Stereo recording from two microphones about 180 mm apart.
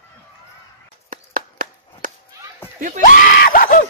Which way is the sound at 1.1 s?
50° right (ahead or behind).